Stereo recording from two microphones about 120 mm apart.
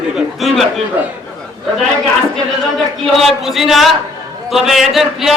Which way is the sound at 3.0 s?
Centre (ahead or behind).